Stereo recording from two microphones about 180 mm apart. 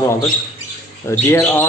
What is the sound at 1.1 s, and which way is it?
Speech, 15° left (ahead or behind).